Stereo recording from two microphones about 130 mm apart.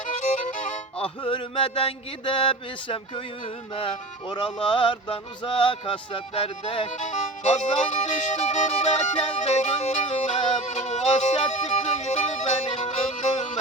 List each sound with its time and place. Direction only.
0.2 s violin: 70° left (ahead or behind)
0.9 s a sound: 45° left (ahead or behind)
3.8 s music: 40° left (ahead or behind)
7.0 s speech: 65° left (ahead or behind)